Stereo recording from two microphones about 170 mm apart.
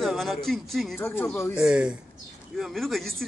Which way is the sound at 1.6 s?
5° right (ahead or behind).